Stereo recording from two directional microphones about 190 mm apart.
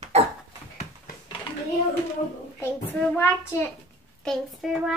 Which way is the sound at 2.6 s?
10° left (ahead or behind).